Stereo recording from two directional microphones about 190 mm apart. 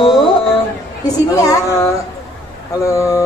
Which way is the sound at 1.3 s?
20° left (ahead or behind).